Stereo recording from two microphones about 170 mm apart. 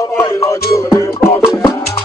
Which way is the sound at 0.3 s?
20° left (ahead or behind).